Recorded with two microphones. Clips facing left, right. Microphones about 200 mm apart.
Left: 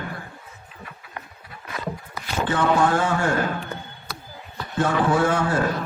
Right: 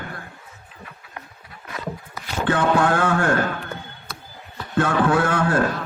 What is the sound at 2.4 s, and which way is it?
Speech, 60° right (ahead or behind).